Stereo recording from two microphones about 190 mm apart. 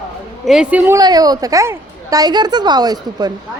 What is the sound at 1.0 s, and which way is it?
A woman's voice, 20° right (ahead or behind).